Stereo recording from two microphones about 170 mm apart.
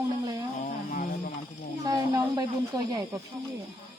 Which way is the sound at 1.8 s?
25° right (ahead or behind).